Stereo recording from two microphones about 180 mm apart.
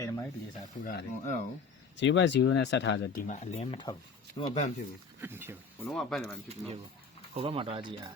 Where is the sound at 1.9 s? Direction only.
90° left.